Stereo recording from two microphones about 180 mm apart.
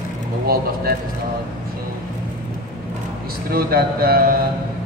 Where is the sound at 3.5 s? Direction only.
55° right (ahead or behind).